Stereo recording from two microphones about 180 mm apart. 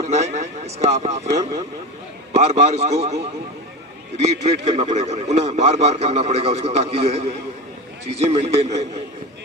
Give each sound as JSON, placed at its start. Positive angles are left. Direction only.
{"t": 0.1, "sound": "speech", "side_deg": -35}
{"t": 2.3, "sound": "speech", "side_deg": -35}
{"t": 4.2, "sound": "speech", "side_deg": -40}